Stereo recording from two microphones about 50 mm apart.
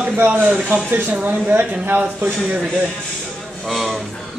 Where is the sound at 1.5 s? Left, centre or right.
Right.